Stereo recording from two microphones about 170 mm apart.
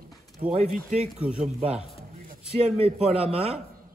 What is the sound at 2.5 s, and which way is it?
A man's voice, 35° right (ahead or behind).